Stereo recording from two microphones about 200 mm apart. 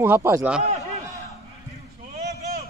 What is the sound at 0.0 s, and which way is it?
Speech, 10° right (ahead or behind).